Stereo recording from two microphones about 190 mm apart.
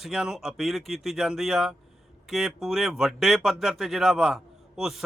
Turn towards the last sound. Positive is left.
turn(degrees=0)  # may be behind; listen again after turning